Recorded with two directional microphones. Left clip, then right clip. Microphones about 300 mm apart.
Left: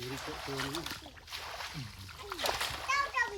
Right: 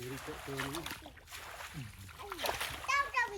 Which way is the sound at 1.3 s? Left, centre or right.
Left.